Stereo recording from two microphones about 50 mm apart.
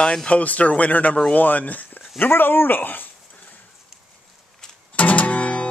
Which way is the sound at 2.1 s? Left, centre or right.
Left.